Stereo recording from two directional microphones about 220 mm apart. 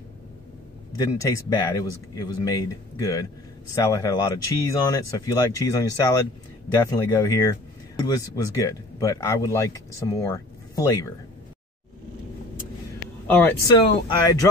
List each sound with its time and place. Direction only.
0.9 s speech: 15° left (ahead or behind)
13.3 s speech: 10° left (ahead or behind)
13.7 s speech: 20° left (ahead or behind)